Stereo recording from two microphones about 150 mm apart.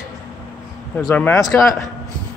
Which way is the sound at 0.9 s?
10° left (ahead or behind).